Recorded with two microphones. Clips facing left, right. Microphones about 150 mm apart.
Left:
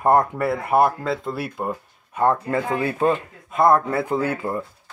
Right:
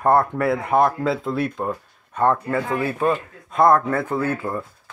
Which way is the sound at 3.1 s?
Centre (ahead or behind).